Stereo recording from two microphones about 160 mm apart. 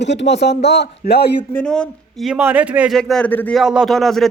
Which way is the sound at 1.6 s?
5° left (ahead or behind).